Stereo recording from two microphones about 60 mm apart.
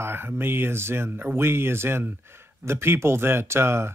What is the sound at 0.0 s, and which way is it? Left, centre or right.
Speech, right.